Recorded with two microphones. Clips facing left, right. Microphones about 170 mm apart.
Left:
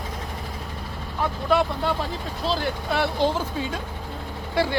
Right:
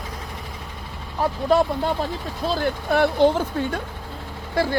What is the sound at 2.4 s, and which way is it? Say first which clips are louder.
Speech: right 3 dB; 50° right (ahead or behind).